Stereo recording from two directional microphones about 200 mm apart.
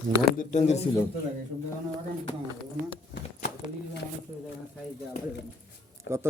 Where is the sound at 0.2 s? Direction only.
40° left (ahead or behind).